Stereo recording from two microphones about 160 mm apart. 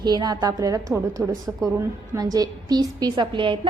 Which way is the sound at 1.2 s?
Centre (ahead or behind).